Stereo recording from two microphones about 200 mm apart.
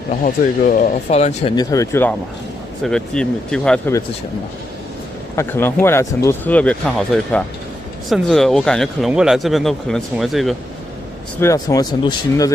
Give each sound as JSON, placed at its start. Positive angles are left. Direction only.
{"t": 0.2, "sound": "speech", "side_deg": 40}
{"t": 1.6, "sound": "speech", "side_deg": 15}
{"t": 5.3, "sound": "speech", "side_deg": 10}
{"t": 11.3, "sound": "speech", "side_deg": 15}